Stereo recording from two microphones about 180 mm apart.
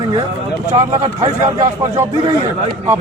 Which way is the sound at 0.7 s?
20° right (ahead or behind).